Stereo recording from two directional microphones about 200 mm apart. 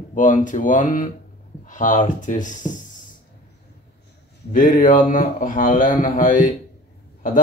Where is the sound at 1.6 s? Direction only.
40° left (ahead or behind).